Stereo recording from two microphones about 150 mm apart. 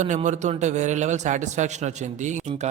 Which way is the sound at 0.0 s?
50° right (ahead or behind).